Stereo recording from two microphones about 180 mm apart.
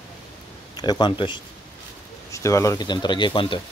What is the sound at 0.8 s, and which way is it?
Speech, 25° left (ahead or behind).